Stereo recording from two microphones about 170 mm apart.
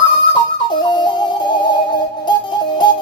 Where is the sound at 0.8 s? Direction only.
25° left (ahead or behind).